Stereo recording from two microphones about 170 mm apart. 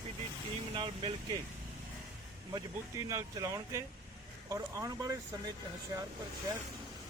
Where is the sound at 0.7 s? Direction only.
30° right (ahead or behind).